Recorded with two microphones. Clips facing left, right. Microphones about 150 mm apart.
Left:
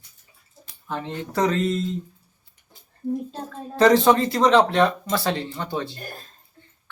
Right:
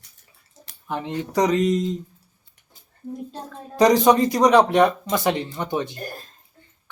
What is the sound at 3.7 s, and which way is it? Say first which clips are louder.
Speech: right 1 dB; 15° right (ahead or behind).